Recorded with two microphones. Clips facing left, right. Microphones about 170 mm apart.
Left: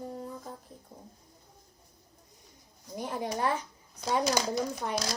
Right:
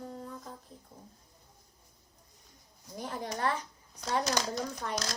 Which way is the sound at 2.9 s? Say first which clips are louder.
Left 4 dB; 15° left (ahead or behind).